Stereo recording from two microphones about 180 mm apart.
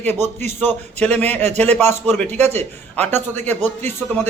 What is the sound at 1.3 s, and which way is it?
Speech, 35° right (ahead or behind).